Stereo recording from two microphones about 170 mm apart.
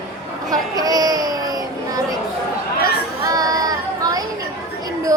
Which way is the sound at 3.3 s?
20° right (ahead or behind).